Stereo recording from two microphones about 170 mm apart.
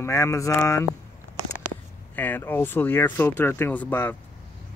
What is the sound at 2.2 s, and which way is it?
Speech, 10° left (ahead or behind).